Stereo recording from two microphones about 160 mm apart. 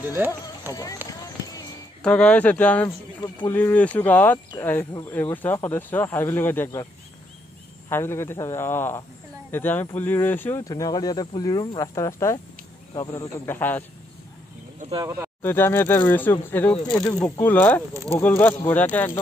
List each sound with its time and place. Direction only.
2.0 s speech: 5° left (ahead or behind)
7.9 s speech: 15° left (ahead or behind)
10.7 s speech: 25° left (ahead or behind)
15.0 s speech: 20° right (ahead or behind)
15.4 s speech: 15° left (ahead or behind)